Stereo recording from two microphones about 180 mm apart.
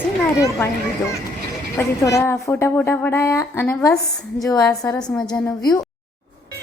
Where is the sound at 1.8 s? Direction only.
15° left (ahead or behind).